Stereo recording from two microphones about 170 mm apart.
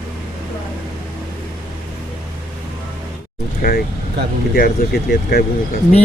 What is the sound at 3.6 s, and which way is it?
Speech, 60° left (ahead or behind).